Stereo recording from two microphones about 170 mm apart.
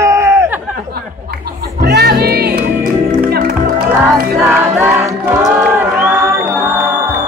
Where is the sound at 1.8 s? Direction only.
70° right (ahead or behind).